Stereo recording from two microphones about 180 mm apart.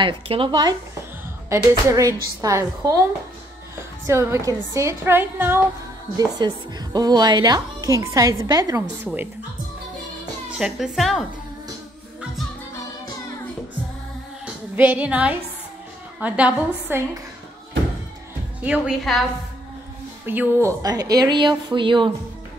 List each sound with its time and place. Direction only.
0.0 s a woman's voice: 30° right (ahead or behind)
4.0 s a woman's voice: 15° right (ahead or behind)
10.6 s speech: centre (ahead or behind)
14.4 s music: 10° right (ahead or behind)
16.2 s a woman's voice: 5° right (ahead or behind)
18.6 s speech: 5° right (ahead or behind)
20.2 s a woman's voice: 10° right (ahead or behind); by 22.1 s 25° right (ahead or behind)